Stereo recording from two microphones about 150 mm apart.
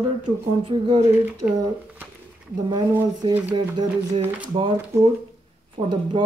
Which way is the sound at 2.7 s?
30° right (ahead or behind).